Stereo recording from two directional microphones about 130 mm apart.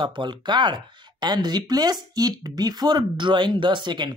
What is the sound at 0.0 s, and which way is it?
Speech, 35° right (ahead or behind).